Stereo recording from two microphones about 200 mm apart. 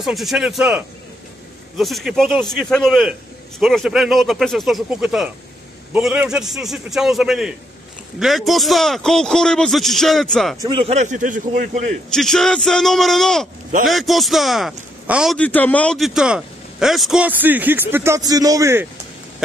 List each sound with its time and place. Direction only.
0.0 s a man's voice: centre (ahead or behind)
10.6 s a man's voice: 25° right (ahead or behind)
12.1 s a man's voice: centre (ahead or behind)
15.3 s a man's voice: 5° left (ahead or behind); by 18.9 s 15° right (ahead or behind)